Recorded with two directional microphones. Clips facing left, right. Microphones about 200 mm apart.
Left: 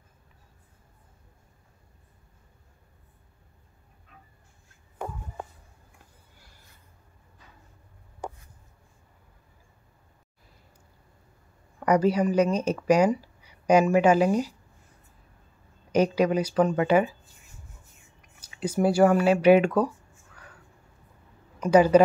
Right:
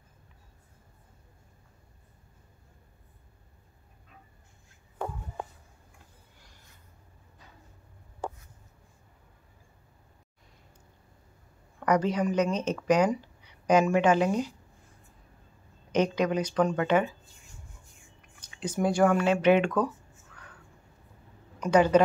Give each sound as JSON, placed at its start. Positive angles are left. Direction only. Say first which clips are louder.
{"t": 11.8, "sound": "speech", "louder": "left 4 dB", "side_deg": 10}
{"t": 15.9, "sound": "speech", "louder": "left 4 dB", "side_deg": 10}
{"t": 18.4, "sound": "speech", "louder": "left 4 dB", "side_deg": 10}
{"t": 21.5, "sound": "speech", "louder": "left 4 dB", "side_deg": 10}